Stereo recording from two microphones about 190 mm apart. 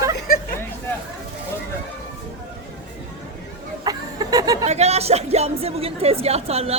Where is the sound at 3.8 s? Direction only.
20° right (ahead or behind).